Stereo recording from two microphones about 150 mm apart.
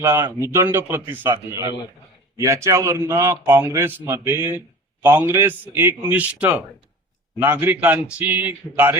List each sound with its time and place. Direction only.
0.0 s a man's voice: 15° right (ahead or behind)